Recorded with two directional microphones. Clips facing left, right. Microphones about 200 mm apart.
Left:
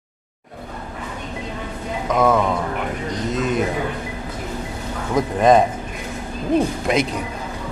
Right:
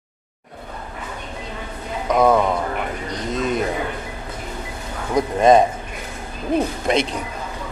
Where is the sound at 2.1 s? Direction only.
15° right (ahead or behind).